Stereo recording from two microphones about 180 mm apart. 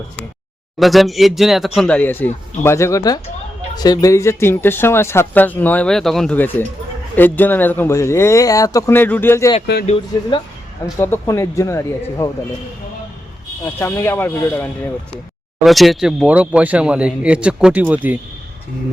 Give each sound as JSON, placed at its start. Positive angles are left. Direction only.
{"t": 0.8, "sound": "speech", "side_deg": 0}
{"t": 10.9, "sound": "speech", "side_deg": 15}
{"t": 13.7, "sound": "speech", "side_deg": 10}
{"t": 15.6, "sound": "speech", "side_deg": 0}